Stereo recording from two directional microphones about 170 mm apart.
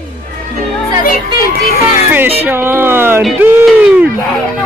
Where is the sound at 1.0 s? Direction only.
60° left (ahead or behind).